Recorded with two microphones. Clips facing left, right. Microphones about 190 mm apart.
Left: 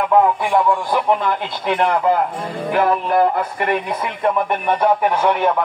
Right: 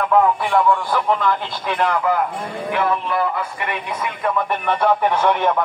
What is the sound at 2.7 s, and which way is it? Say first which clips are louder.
Speech: left 4 dB; 40° left (ahead or behind).